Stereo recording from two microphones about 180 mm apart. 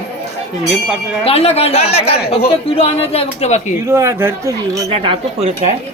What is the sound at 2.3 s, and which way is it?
Speech, 35° left (ahead or behind).